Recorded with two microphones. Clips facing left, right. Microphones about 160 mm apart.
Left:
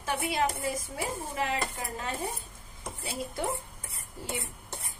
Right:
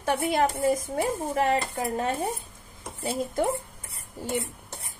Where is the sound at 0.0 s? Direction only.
55° right (ahead or behind).